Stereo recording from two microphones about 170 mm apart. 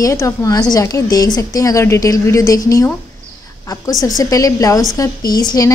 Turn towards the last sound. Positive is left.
turn(degrees=20)  # may be behind; listen again after turning